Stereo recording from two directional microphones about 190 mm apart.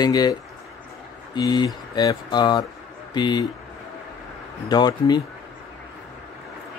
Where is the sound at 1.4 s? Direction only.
20° left (ahead or behind).